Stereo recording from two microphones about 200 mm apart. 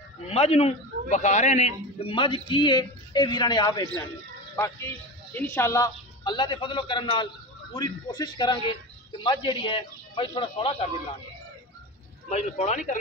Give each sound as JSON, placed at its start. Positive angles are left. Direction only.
{"t": 0.3, "sound": "a man's voice", "side_deg": 30}
{"t": 5.3, "sound": "a man's voice", "side_deg": 10}
{"t": 12.3, "sound": "speech", "side_deg": 35}